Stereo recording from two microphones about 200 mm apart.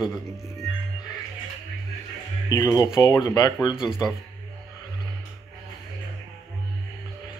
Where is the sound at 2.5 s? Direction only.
15° left (ahead or behind).